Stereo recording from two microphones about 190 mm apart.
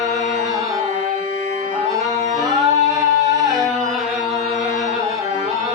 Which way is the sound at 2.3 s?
20° right (ahead or behind).